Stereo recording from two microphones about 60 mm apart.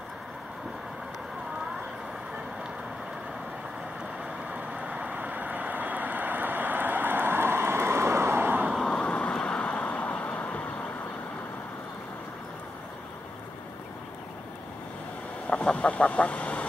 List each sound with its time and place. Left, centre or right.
4.5 s vehicle: centre; by 8.5 s right
8.8 s vehicle: centre
10.3 s vehicle: left
15.5 s goose: centre